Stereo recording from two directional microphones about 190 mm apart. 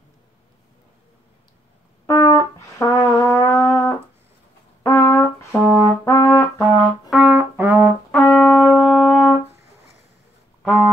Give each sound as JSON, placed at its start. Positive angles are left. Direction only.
{"t": 2.0, "sound": "brass instrument", "side_deg": 15}
{"t": 2.6, "sound": "music", "side_deg": 15}
{"t": 4.8, "sound": "brass instrument", "side_deg": 15}
{"t": 5.6, "sound": "brass instrument", "side_deg": -10}
{"t": 6.0, "sound": "brass instrument", "side_deg": 15}
{"t": 6.6, "sound": "brass instrument", "side_deg": -5}
{"t": 8.1, "sound": "brass instrument", "side_deg": 5}